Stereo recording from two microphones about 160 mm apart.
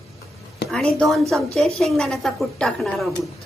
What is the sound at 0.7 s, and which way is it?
A woman's voice, 5° left (ahead or behind).